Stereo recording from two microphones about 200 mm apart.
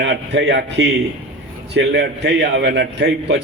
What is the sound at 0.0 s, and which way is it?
A man's voice, 60° right (ahead or behind).